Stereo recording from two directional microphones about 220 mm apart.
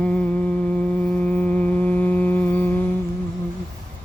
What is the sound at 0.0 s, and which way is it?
Humming, 5° left (ahead or behind).